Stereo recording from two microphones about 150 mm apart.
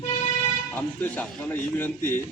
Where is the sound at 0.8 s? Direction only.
10° left (ahead or behind).